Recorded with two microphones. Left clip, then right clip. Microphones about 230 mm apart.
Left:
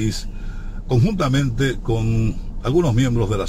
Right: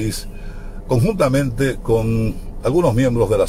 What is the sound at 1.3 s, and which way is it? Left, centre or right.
Speech, centre.